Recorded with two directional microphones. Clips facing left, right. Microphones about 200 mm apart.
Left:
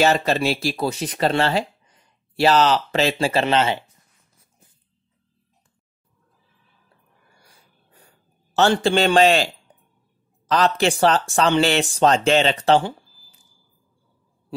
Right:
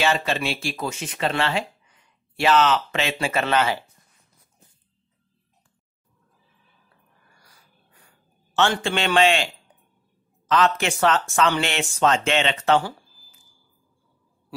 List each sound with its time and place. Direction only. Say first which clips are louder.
0.0 s speech: left 5 dB; 40° left (ahead or behind)
3.4 s speech: left 2 dB; 25° left (ahead or behind)
7.4 s wheeze: left 2 dB; 35° left (ahead or behind)
8.5 s speech: left 5 dB; 35° left (ahead or behind)
10.5 s speech: left 2 dB; 35° left (ahead or behind)